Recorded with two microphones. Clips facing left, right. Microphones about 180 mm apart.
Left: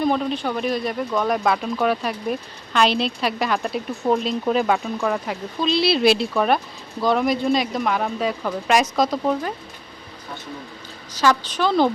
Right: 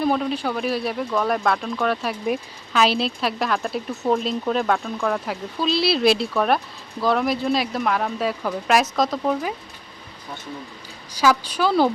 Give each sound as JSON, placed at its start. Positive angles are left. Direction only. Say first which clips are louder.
{"t": 0.0, "sound": "speech", "louder": "even", "side_deg": -5}
{"t": 11.1, "sound": "a woman's voice", "louder": "even", "side_deg": -10}